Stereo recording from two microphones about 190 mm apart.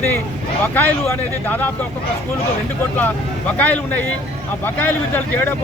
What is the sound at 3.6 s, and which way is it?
Speech, 10° left (ahead or behind).